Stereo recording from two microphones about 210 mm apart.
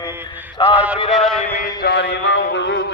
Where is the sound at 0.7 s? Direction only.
5° right (ahead or behind).